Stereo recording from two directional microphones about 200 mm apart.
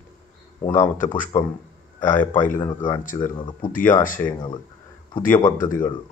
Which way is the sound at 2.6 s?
20° left (ahead or behind).